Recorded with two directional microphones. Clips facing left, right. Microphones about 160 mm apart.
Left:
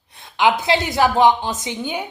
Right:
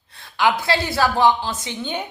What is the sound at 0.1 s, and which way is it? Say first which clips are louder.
A woman's voice: left 2 dB; 20° left (ahead or behind).